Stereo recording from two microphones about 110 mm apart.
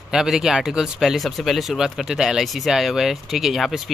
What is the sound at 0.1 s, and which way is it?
Speech, 5° right (ahead or behind).